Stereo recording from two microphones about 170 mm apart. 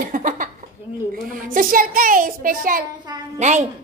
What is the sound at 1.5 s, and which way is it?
A woman's voice, 55° right (ahead or behind).